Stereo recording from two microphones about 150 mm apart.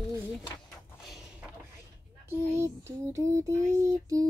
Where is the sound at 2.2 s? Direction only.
15° right (ahead or behind).